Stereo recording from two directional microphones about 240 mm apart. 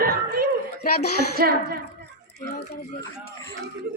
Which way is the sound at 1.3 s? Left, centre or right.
Right.